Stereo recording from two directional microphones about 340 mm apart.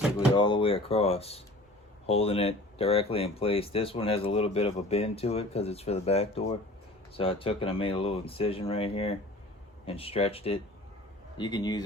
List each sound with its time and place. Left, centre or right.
0.3 s speech: centre